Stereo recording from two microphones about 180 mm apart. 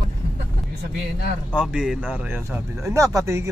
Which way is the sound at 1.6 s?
5° right (ahead or behind).